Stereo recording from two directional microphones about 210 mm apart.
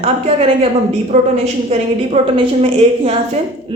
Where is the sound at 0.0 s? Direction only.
30° right (ahead or behind).